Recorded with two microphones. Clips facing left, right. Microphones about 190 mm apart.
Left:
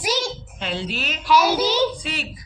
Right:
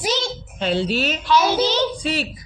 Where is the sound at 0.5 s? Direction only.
35° right (ahead or behind).